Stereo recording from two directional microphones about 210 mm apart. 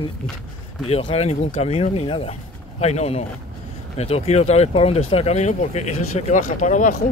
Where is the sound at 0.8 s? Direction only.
30° left (ahead or behind).